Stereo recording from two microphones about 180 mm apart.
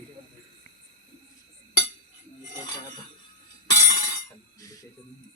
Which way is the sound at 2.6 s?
20° left (ahead or behind).